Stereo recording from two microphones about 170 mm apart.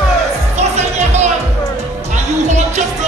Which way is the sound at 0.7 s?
40° right (ahead or behind).